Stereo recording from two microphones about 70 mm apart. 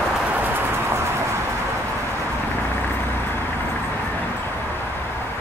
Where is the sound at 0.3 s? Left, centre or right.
Right.